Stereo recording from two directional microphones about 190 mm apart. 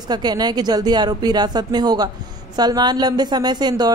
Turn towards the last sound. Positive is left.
turn(degrees=-20)  # may be behind; listen again after turning